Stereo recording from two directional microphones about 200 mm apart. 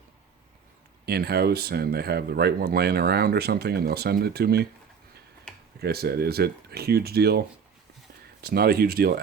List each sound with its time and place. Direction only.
1.0 s speech: 50° right (ahead or behind)
5.8 s speech: 50° right (ahead or behind)